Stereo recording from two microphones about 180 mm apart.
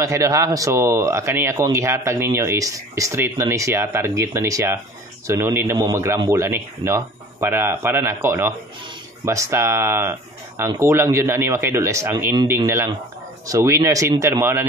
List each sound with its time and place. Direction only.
0.0 s speech: 20° right (ahead or behind)